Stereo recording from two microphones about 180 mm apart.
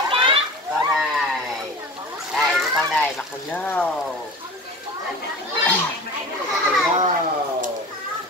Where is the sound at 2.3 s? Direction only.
Centre (ahead or behind).